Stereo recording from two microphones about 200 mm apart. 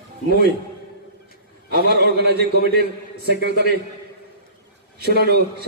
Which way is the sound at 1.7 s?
55° right (ahead or behind).